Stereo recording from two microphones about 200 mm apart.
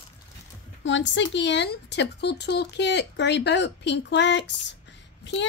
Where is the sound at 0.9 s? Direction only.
65° left (ahead or behind).